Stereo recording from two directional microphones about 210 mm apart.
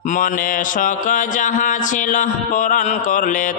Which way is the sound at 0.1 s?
40° left (ahead or behind).